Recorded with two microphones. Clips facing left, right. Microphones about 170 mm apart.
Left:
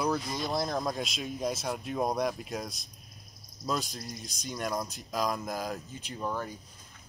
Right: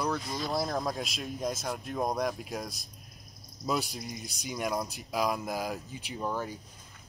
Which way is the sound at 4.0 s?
Centre (ahead or behind).